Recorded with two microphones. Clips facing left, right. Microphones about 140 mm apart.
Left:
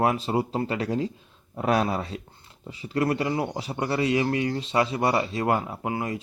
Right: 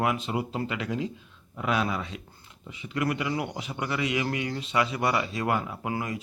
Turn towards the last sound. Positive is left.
turn(degrees=25)  # may be behind; listen again after turning